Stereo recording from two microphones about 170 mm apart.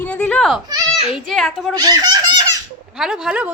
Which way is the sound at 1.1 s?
Centre (ahead or behind).